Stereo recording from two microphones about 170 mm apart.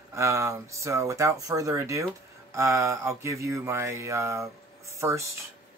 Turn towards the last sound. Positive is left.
turn(degrees=-15)  # may be behind; listen again after turning